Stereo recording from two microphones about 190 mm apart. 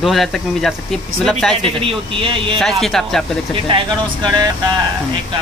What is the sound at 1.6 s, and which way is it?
Speech, 30° right (ahead or behind).